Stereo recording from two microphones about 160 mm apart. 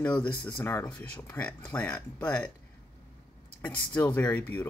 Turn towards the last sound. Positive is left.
turn(degrees=10)  # may be behind; listen again after turning